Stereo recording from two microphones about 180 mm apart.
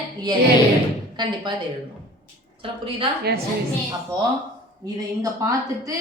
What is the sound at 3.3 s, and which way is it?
Speech, 60° right (ahead or behind).